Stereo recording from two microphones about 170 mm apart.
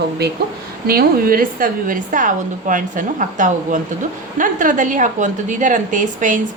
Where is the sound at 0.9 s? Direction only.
60° right (ahead or behind).